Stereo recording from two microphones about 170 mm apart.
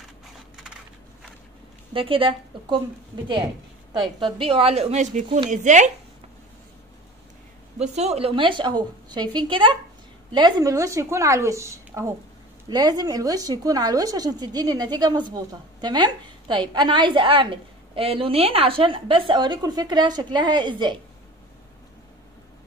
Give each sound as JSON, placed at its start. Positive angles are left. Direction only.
{"t": 2.0, "sound": "a woman's voice", "side_deg": -30}
{"t": 3.9, "sound": "a woman's voice", "side_deg": -30}
{"t": 7.9, "sound": "a woman's voice", "side_deg": -40}